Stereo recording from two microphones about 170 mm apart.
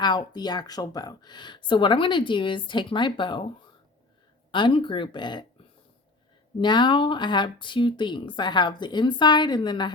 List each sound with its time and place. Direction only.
0.0 s speech: 25° left (ahead or behind)
6.6 s speech: 25° left (ahead or behind)